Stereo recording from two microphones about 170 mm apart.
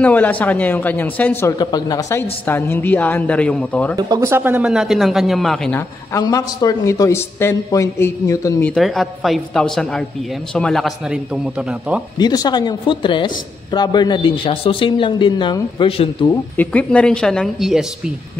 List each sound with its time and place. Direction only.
0.0 s a man's voice: 10° left (ahead or behind)
1.6 s a man's voice: 25° left (ahead or behind); by 3.9 s 5° left (ahead or behind)
3.9 s speech: 20° right (ahead or behind); by 5.8 s centre (ahead or behind)
5.8 s a man's voice: 20° left (ahead or behind)
8.7 s speech: centre (ahead or behind)
12.2 s speech: 25° left (ahead or behind)
16.3 s speech: 10° left (ahead or behind)